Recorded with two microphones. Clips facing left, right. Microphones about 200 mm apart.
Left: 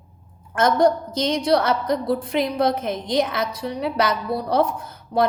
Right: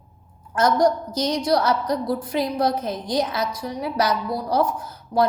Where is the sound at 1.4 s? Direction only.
55° left (ahead or behind).